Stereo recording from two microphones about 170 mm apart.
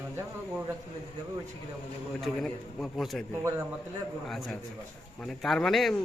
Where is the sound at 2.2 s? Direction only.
Centre (ahead or behind).